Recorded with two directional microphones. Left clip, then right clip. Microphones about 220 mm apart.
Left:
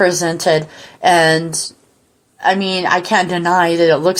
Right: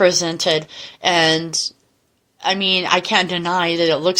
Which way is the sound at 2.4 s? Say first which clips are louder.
Left 3 dB; 30° right (ahead or behind).